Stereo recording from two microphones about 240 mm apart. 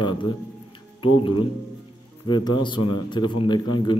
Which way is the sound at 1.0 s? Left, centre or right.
Left.